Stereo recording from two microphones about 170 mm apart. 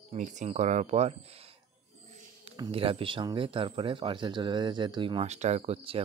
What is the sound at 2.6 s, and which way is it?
Speech, 30° right (ahead or behind).